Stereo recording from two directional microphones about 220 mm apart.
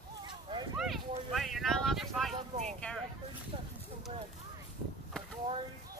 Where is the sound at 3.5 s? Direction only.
25° right (ahead or behind).